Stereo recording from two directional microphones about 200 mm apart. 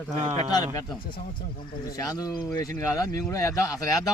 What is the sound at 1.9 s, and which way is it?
Speech, 20° left (ahead or behind).